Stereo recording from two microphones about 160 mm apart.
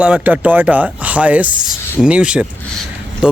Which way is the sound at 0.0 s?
10° right (ahead or behind).